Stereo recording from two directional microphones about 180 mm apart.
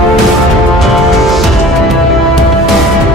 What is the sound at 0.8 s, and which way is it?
Music, centre (ahead or behind).